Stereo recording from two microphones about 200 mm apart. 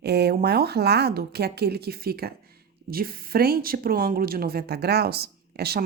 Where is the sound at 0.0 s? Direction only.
55° right (ahead or behind).